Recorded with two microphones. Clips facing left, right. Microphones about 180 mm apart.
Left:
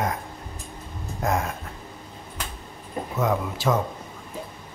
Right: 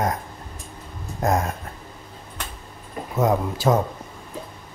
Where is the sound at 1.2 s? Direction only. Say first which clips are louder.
Right 3 dB; 40° right (ahead or behind).